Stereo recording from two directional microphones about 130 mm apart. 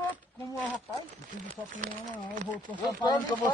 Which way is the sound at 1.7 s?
80° right.